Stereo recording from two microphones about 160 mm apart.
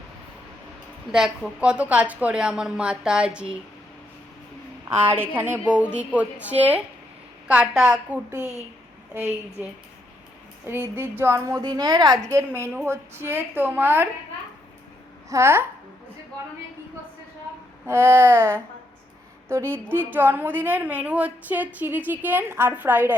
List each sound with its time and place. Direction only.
1.1 s a woman's voice: 5° right (ahead or behind)
4.9 s a woman's voice: 15° right (ahead or behind)
8.4 s a woman's voice: 15° left (ahead or behind)
9.1 s a woman's voice: 10° right (ahead or behind)
10.9 s a woman's voice: 15° right (ahead or behind)
15.3 s a woman's voice: 15° right (ahead or behind)
17.8 s a woman's voice: 15° right (ahead or behind)